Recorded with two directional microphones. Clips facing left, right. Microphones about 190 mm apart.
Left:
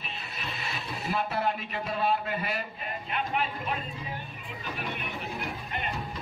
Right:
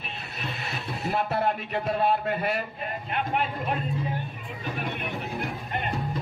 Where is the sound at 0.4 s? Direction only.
50° right (ahead or behind).